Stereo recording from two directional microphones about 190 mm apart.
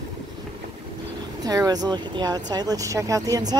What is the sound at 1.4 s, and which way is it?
Speech, 20° right (ahead or behind).